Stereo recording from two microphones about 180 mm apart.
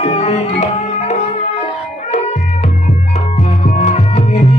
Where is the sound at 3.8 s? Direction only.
35° left (ahead or behind).